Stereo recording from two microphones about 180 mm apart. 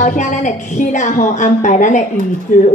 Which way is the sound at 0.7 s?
45° left (ahead or behind).